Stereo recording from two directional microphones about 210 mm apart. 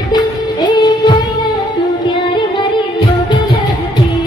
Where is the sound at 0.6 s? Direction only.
20° left (ahead or behind).